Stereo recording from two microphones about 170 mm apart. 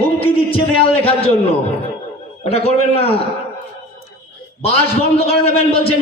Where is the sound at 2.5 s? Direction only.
35° left (ahead or behind).